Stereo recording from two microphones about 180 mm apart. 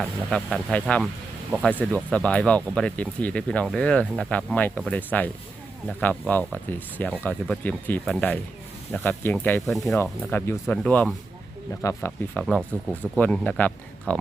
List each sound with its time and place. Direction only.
0.0 s speech: 5° left (ahead or behind)
10.0 s speech: 15° left (ahead or behind)
12.3 s speech: centre (ahead or behind)